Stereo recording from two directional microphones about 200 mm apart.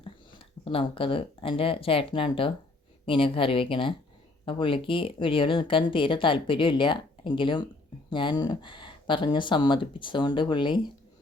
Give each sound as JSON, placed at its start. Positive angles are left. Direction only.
{"t": 0.0, "sound": "speech", "side_deg": 30}